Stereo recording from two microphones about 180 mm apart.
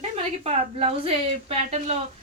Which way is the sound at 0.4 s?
35° right (ahead or behind).